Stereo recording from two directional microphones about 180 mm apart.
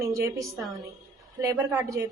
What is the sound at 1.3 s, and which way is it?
Speech, 15° right (ahead or behind).